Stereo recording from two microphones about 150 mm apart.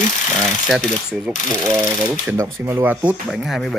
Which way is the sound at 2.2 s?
20° right (ahead or behind).